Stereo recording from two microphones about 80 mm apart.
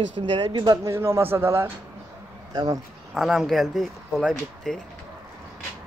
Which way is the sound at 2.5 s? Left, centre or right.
Right.